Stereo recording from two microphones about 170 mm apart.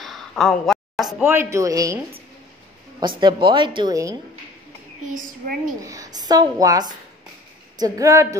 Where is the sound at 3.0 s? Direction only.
25° right (ahead or behind).